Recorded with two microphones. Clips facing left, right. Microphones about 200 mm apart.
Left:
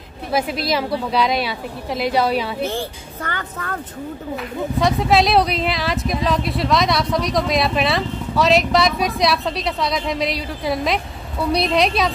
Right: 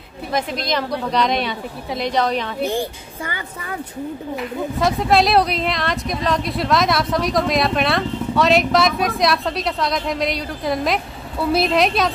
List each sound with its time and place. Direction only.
0.3 s a woman's voice: 5° left (ahead or behind)
2.6 s speech: 15° right (ahead or behind)
4.7 s speech: centre (ahead or behind)